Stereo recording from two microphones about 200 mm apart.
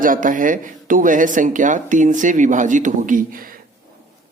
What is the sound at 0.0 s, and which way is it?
Speech, 40° right (ahead or behind).